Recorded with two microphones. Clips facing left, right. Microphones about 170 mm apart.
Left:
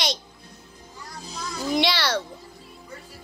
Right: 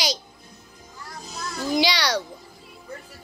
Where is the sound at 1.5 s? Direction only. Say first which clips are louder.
Right 1 dB; centre (ahead or behind).